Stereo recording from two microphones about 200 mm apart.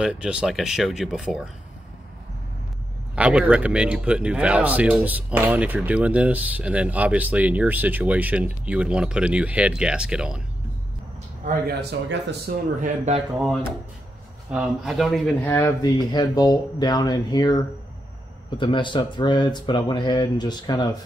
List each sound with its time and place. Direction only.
0.0 s speech: 5° right (ahead or behind)
3.2 s speech: 5° right (ahead or behind)
11.4 s speech: 55° right (ahead or behind)
12.8 s speech: 35° right (ahead or behind)
14.5 s speech: centre (ahead or behind); by 20.9 s 20° left (ahead or behind)